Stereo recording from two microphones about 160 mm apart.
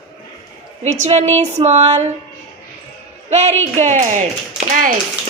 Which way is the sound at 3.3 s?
45° right (ahead or behind).